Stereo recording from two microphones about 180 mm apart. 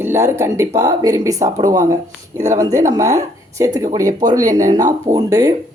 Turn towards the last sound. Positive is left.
turn(degrees=-20)  # may be behind; listen again after turning